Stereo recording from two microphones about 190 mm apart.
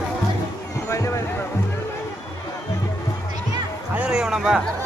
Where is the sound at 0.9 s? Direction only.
15° left (ahead or behind).